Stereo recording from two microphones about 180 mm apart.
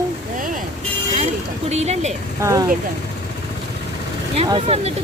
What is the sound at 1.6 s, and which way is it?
Speech, 35° right (ahead or behind).